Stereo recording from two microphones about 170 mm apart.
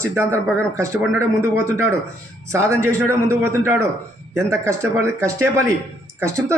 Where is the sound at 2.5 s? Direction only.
15° right (ahead or behind).